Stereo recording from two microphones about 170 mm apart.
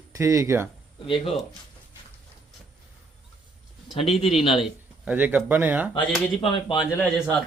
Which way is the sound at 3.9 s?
35° left (ahead or behind).